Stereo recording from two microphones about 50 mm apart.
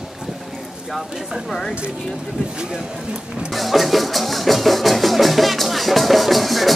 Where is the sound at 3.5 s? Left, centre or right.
Centre.